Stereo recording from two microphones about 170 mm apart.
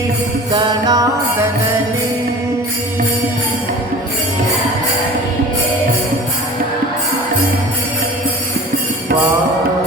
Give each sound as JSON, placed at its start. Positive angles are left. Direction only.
{"t": 0.5, "sound": "music", "side_deg": -25}